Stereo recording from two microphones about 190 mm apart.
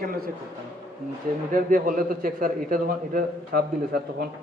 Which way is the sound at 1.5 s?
45° right (ahead or behind).